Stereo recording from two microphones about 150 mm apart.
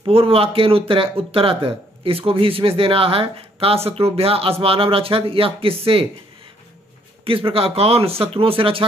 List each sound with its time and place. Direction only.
0.0 s speech: 40° right (ahead or behind)
7.2 s speech: 40° right (ahead or behind)